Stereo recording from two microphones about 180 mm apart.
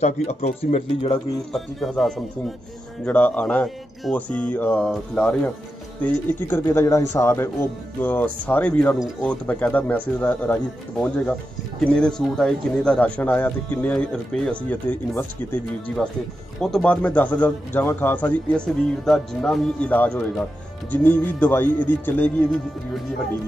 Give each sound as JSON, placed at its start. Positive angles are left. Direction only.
{"t": 0.0, "sound": "speech", "side_deg": 35}
{"t": 1.5, "sound": "speech", "side_deg": 0}